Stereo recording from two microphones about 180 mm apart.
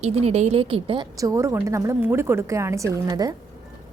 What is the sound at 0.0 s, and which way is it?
A woman's voice, 35° right (ahead or behind).